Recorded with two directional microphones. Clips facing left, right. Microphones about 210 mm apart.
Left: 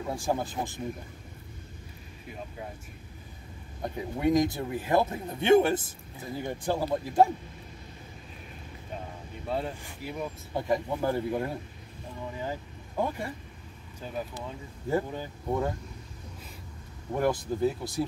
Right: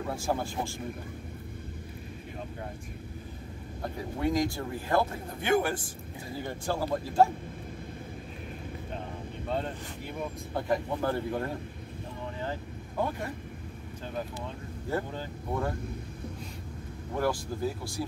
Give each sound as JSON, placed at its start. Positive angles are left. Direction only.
{"t": 0.0, "sound": "speech", "side_deg": 15}
{"t": 3.8, "sound": "speech", "side_deg": 20}
{"t": 9.5, "sound": "speech", "side_deg": 5}
{"t": 14.9, "sound": "speech", "side_deg": 15}
{"t": 17.1, "sound": "speech", "side_deg": 20}